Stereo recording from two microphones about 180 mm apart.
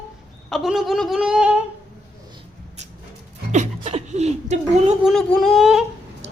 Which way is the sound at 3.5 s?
40° right (ahead or behind).